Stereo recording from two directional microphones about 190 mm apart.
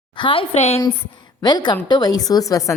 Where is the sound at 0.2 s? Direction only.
30° left (ahead or behind).